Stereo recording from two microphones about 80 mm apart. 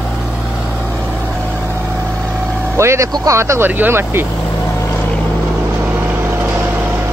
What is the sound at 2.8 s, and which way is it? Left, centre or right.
Speech, right.